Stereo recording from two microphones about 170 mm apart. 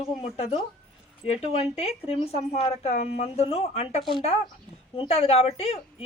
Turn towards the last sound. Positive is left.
turn(degrees=35)  # may be behind; listen again after turning